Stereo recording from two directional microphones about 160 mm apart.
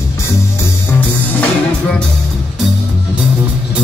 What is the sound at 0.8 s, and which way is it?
Music, 10° left (ahead or behind).